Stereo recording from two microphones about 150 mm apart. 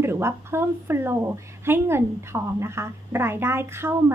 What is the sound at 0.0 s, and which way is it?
A woman's voice, 15° right (ahead or behind).